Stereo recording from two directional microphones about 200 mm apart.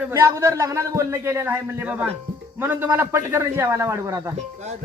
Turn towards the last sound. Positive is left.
turn(degrees=-15)  # may be behind; listen again after turning